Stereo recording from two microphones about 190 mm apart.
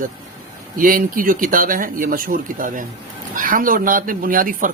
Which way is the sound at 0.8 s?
45° right (ahead or behind).